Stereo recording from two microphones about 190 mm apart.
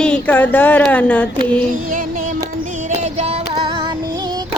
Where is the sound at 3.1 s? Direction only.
30° right (ahead or behind).